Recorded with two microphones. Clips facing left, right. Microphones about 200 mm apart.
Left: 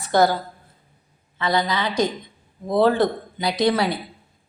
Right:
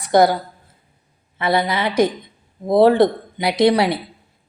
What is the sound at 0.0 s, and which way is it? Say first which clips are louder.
Speech: right 4 dB; 20° right (ahead or behind).